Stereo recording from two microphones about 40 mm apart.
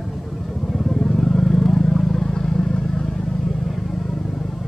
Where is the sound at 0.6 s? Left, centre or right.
Centre.